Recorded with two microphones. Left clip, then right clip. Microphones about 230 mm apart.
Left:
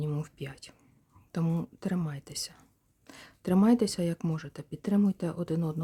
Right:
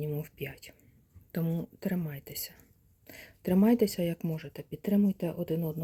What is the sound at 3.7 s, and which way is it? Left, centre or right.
Speech, left.